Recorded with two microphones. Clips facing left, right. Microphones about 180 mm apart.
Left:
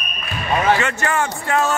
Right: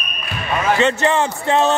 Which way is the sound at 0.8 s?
25° right (ahead or behind).